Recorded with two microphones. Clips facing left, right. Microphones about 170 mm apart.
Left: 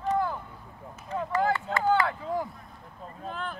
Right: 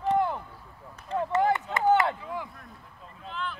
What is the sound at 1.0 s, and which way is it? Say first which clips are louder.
Speech: right 2 dB; 20° right (ahead or behind).